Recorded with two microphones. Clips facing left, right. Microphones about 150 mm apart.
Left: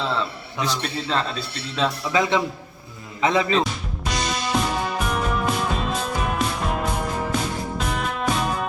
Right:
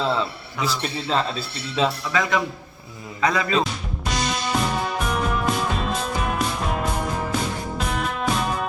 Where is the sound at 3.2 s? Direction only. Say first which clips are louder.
Left 2 dB; 25° left (ahead or behind).